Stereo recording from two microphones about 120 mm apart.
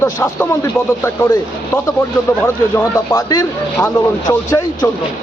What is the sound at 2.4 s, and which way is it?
A man's voice, 25° left (ahead or behind).